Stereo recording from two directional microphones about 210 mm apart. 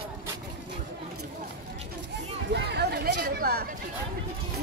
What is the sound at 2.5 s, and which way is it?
Chatter, 50° right (ahead or behind).